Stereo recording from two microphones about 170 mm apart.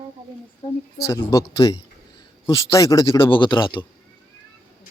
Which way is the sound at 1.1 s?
20° left (ahead or behind).